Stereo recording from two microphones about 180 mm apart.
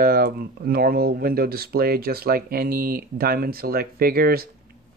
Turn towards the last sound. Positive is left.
turn(degrees=-55)  # may be behind; listen again after turning